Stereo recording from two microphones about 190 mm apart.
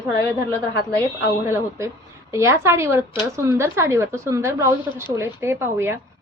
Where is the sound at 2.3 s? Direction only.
15° right (ahead or behind).